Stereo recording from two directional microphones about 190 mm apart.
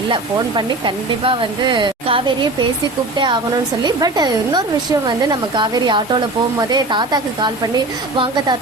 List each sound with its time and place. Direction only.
0.1 s a woman's voice: 25° right (ahead or behind)